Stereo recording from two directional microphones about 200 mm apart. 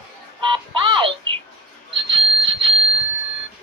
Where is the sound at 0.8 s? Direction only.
20° right (ahead or behind).